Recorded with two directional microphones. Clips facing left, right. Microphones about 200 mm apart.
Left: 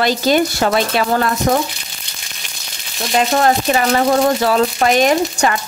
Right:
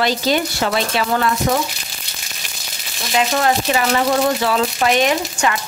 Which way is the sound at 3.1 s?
40° left (ahead or behind).